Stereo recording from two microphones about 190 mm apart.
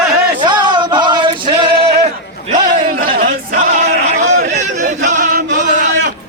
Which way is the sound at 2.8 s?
45° right (ahead or behind).